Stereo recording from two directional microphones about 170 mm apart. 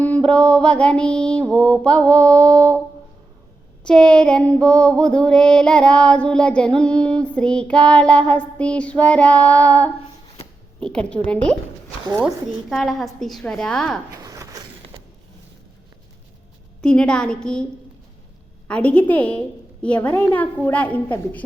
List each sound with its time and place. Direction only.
0.0 s child singing: 10° left (ahead or behind)
3.8 s female singing: 5° left (ahead or behind)
6.7 s child singing: 5° left (ahead or behind)
10.8 s a woman's voice: 5° left (ahead or behind)
12.2 s female singing: centre (ahead or behind)
14.1 s a sound: 20° right (ahead or behind)
16.8 s female singing: 5° left (ahead or behind)
18.7 s child singing: 5° left (ahead or behind)